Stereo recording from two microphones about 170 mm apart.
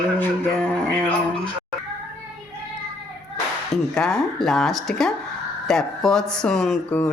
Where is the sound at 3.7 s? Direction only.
5° left (ahead or behind).